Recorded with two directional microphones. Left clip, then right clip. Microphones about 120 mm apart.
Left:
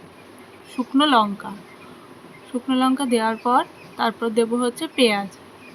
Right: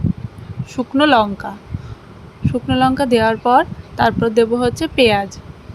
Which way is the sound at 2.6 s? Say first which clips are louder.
Right 6 dB; 45° right (ahead or behind).